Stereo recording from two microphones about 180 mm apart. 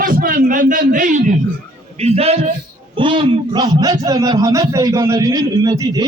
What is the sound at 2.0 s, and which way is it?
A man's voice, 35° right (ahead or behind).